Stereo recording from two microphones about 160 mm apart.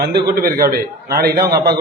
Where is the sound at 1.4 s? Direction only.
20° right (ahead or behind).